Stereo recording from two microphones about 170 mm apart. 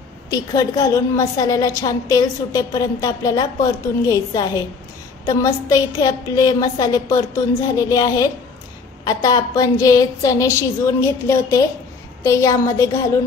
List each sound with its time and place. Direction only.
0.3 s a woman's voice: 20° left (ahead or behind)